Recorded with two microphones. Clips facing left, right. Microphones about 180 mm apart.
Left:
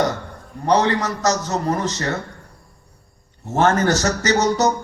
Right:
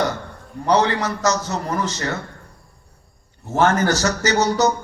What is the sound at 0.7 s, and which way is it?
A man's voice, 35° left (ahead or behind).